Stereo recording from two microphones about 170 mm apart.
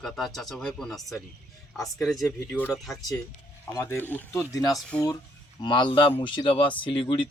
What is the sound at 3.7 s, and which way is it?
Speech, 15° left (ahead or behind).